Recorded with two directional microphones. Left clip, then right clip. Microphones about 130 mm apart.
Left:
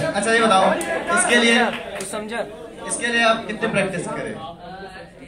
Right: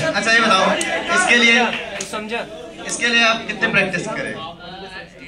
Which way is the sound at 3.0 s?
35° left (ahead or behind).